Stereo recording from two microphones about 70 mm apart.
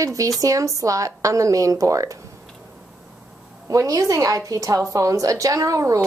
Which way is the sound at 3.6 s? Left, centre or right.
Right.